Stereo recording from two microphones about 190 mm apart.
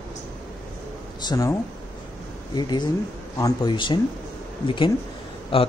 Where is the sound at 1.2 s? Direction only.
20° left (ahead or behind).